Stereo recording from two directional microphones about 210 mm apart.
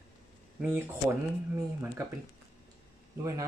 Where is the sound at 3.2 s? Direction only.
15° right (ahead or behind).